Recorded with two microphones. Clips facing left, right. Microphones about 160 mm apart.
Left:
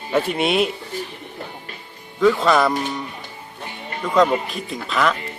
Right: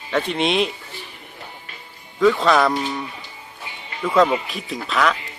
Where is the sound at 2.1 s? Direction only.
Centre (ahead or behind).